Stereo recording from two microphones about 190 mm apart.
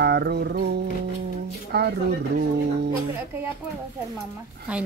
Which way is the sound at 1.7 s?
60° right (ahead or behind).